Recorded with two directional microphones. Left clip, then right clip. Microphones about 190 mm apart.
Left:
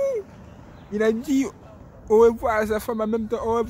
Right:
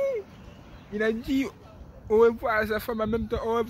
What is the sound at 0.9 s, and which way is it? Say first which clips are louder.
Speech: left 5 dB; 20° left (ahead or behind).